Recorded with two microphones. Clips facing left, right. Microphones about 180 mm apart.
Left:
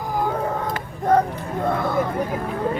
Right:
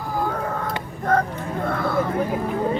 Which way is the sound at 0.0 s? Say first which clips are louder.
Left 1 dB; 15° left (ahead or behind).